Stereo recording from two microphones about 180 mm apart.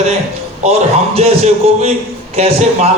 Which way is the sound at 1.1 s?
35° right (ahead or behind).